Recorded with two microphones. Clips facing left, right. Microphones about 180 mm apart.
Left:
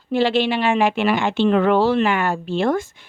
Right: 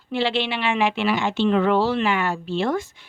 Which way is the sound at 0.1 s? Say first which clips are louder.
Left 5 dB; 45° left (ahead or behind).